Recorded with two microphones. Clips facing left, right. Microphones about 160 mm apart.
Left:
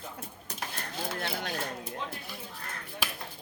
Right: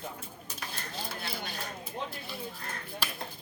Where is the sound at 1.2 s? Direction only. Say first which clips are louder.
Left 5 dB; 85° left.